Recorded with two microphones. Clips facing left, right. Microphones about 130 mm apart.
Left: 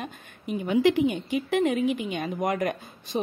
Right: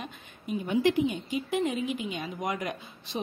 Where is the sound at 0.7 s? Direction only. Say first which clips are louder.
Left 4 dB; 90° left.